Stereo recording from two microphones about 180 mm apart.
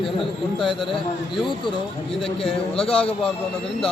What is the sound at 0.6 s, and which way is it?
Speech, centre (ahead or behind).